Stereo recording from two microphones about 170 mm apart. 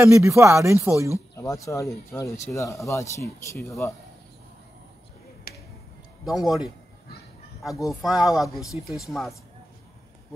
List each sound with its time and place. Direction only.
0.0 s speech: 15° right (ahead or behind)
1.1 s speech: 20° left (ahead or behind)
5.5 s finger snapping: 60° left (ahead or behind)
6.2 s speech: centre (ahead or behind)
7.9 s speech: centre (ahead or behind)